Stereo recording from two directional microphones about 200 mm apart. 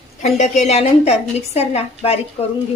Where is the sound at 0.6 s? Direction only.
35° left (ahead or behind).